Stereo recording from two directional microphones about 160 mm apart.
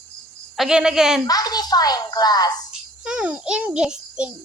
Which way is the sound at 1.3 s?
25° left (ahead or behind).